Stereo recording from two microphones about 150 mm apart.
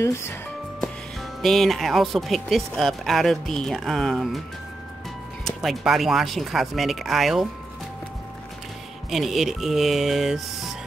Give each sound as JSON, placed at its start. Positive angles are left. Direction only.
{"t": 0.0, "sound": "speech", "side_deg": 15}
{"t": 1.4, "sound": "speech", "side_deg": 0}
{"t": 5.4, "sound": "speech", "side_deg": 0}
{"t": 9.1, "sound": "speech", "side_deg": 0}